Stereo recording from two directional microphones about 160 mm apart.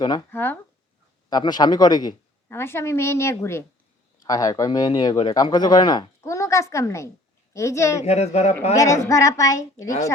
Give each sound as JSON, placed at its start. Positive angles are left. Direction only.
{"t": 0.0, "sound": "speech", "side_deg": 25}
{"t": 0.3, "sound": "a woman's voice", "side_deg": 15}
{"t": 1.3, "sound": "a woman's voice", "side_deg": 25}
{"t": 8.0, "sound": "speech", "side_deg": 45}
{"t": 8.7, "sound": "speech", "side_deg": 20}